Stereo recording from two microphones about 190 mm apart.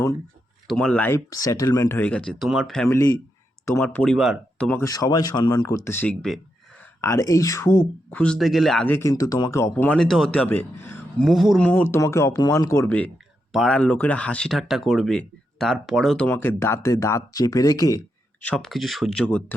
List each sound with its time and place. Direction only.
0.7 s speech: 5° left (ahead or behind)
4.8 s speech: 20° left (ahead or behind)
7.0 s speech: 15° left (ahead or behind)
11.3 s speech: centre (ahead or behind); by 18.0 s 15° left (ahead or behind)
18.4 s speech: 5° left (ahead or behind)